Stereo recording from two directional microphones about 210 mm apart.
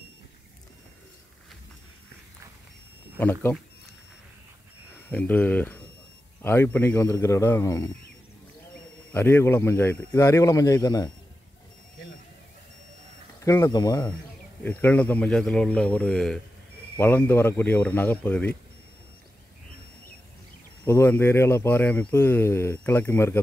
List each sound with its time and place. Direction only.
3.2 s speech: 10° left (ahead or behind)
5.1 s speech: 5° left (ahead or behind)
9.1 s speech: 10° left (ahead or behind)
13.4 s speech: 15° left (ahead or behind)
14.6 s a man's voice: 5° left (ahead or behind)
20.8 s speech: 10° left (ahead or behind)